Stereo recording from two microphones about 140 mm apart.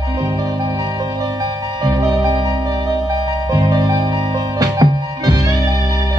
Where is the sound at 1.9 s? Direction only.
25° right (ahead or behind).